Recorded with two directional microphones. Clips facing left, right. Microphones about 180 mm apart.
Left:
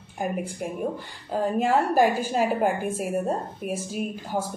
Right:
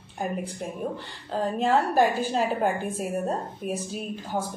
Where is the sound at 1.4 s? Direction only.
10° left (ahead or behind).